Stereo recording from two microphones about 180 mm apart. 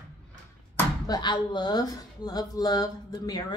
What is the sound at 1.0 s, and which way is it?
Speech, 25° left (ahead or behind).